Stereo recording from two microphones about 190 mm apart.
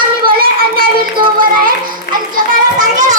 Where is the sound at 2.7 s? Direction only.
40° right (ahead or behind).